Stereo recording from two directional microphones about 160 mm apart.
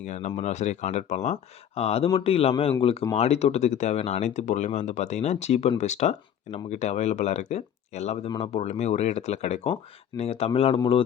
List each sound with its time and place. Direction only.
0.0 s speech: 45° left (ahead or behind)